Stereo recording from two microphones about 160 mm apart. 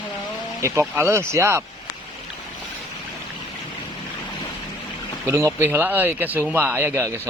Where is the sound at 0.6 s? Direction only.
20° right (ahead or behind).